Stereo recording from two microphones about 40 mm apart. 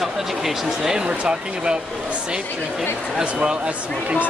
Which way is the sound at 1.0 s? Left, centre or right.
Right.